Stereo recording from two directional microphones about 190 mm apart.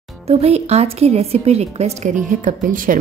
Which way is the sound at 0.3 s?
35° right (ahead or behind).